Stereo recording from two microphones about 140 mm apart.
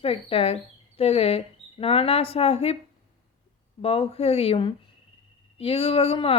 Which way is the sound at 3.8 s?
45° left (ahead or behind).